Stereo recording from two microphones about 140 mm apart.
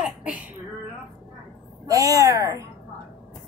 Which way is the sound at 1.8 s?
25° right (ahead or behind).